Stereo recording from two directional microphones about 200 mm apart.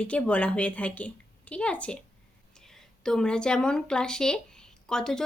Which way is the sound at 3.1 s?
5° left (ahead or behind).